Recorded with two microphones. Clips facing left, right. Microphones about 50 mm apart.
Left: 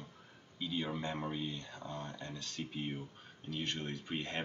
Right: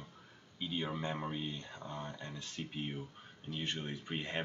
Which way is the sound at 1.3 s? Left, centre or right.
Right.